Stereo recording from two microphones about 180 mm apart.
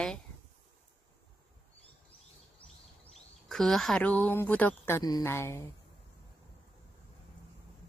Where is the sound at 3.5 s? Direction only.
Centre (ahead or behind).